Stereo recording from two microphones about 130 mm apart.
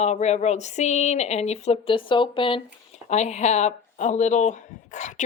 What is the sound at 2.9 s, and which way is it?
Speech, 60° left (ahead or behind).